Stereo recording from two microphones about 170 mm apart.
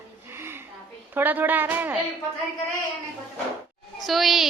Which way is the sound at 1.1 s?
10° right (ahead or behind).